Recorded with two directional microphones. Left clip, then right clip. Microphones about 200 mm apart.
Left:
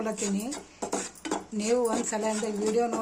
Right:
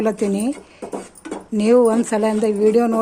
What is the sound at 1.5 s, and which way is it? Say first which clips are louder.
A woman's voice: right 13 dB; 45° right (ahead or behind).